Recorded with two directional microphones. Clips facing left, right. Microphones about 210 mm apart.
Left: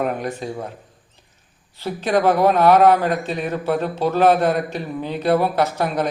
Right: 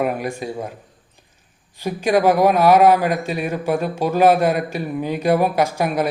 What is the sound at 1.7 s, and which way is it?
A man's voice, 10° right (ahead or behind).